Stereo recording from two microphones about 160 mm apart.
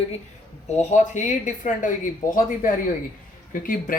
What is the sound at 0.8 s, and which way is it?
Speech, 50° left (ahead or behind).